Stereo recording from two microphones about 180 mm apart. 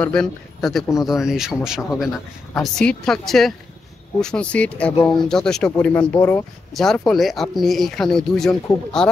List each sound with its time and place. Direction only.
0.0 s speech: 5° left (ahead or behind)
6.7 s speech: centre (ahead or behind)